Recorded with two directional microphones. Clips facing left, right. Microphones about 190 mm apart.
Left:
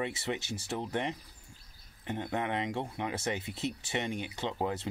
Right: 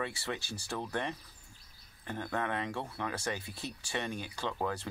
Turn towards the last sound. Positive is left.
turn(degrees=20)  # may be behind; listen again after turning